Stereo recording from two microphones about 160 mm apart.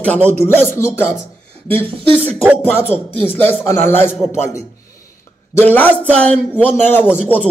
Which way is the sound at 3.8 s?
45° right (ahead or behind).